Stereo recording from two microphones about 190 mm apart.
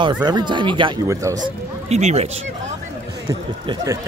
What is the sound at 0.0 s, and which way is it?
Speech, 20° right (ahead or behind).